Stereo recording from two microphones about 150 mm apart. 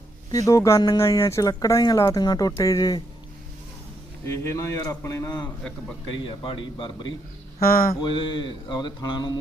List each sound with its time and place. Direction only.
0.3 s speech: 25° left (ahead or behind)
4.3 s speech: 20° left (ahead or behind)
6.1 s a man's voice: 35° left (ahead or behind)
7.6 s mantra: 75° left (ahead or behind)
8.0 s speech: 30° left (ahead or behind)